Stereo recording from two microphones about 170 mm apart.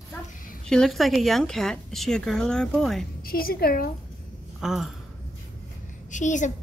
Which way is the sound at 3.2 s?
60° left (ahead or behind).